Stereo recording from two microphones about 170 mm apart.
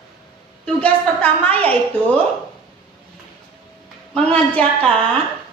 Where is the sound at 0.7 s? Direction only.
10° left (ahead or behind).